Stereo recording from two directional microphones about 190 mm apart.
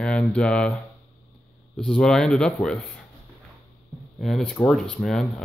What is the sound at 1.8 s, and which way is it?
Speech, 5° left (ahead or behind).